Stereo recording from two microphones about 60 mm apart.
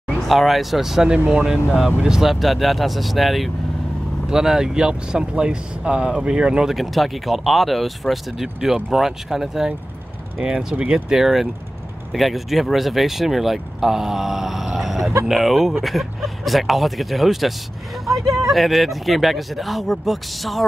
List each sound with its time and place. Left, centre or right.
0.3 s speech: centre
1.1 s speech: centre
6.7 s speech: centre